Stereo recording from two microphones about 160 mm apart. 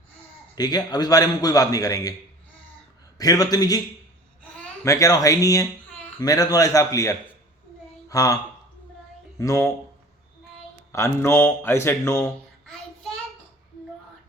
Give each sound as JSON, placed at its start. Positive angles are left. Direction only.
{"t": 0.5, "sound": "a man's voice", "side_deg": 25}
{"t": 3.2, "sound": "a man's voice", "side_deg": 25}
{"t": 4.8, "sound": "a man's voice", "side_deg": 20}
{"t": 9.4, "sound": "a man's voice", "side_deg": 20}
{"t": 10.9, "sound": "a man's voice", "side_deg": 15}